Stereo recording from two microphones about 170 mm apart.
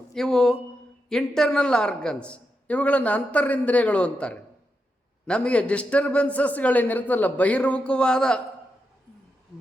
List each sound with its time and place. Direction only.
0.1 s a man's voice: 5° left (ahead or behind)